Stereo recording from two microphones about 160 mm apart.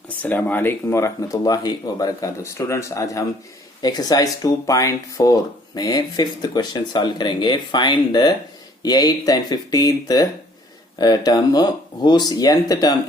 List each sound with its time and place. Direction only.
0.2 s speech: 10° left (ahead or behind)